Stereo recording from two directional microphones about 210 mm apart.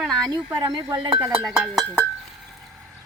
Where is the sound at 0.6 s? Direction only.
20° right (ahead or behind).